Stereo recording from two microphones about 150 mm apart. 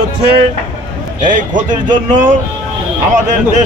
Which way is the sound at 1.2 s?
60° right (ahead or behind).